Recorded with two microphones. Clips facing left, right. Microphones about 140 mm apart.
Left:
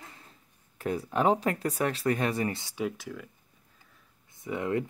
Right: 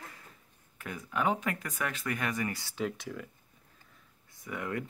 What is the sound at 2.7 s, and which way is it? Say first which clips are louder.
Speech: left 2 dB; 5° left (ahead or behind).